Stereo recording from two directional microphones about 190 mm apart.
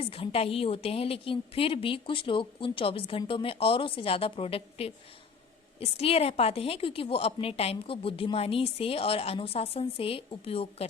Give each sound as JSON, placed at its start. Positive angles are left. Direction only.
{"t": 0.0, "sound": "a woman's voice", "side_deg": 30}